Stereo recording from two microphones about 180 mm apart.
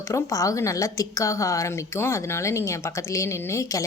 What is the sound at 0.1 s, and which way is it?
Speech, 20° left (ahead or behind).